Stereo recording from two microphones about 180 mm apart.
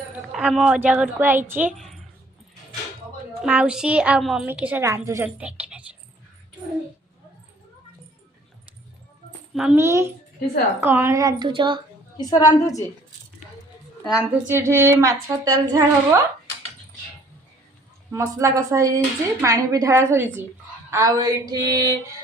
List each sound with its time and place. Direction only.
0.3 s a woman's voice: 5° right (ahead or behind)
3.4 s a woman's voice: 5° right (ahead or behind)
9.6 s a woman's voice: 5° right (ahead or behind)
9.8 s a woman's voice: 15° right (ahead or behind)
12.1 s a woman's voice: 20° left (ahead or behind)
14.0 s a woman's voice: 5° right (ahead or behind)
14.4 s a woman's voice: 15° right (ahead or behind)
18.1 s a woman's voice: 15° right (ahead or behind)